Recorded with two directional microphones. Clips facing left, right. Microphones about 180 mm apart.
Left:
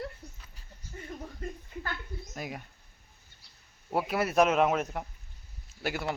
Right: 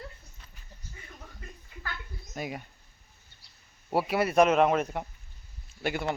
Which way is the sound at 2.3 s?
Centre (ahead or behind).